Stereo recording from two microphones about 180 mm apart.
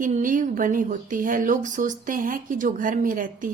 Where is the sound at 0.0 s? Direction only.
50° right (ahead or behind).